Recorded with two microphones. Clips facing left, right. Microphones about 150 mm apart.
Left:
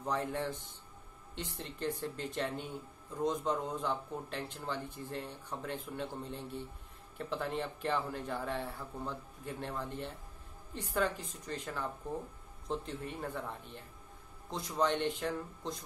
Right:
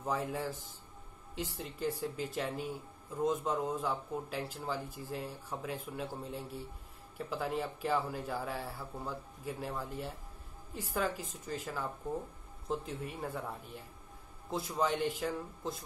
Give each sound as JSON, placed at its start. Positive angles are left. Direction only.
{"t": 0.0, "sound": "a man's voice", "side_deg": -5}